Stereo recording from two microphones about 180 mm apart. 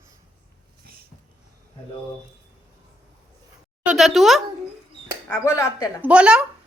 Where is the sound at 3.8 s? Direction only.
Centre (ahead or behind).